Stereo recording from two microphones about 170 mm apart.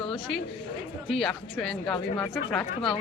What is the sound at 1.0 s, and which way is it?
A woman's voice, centre (ahead or behind).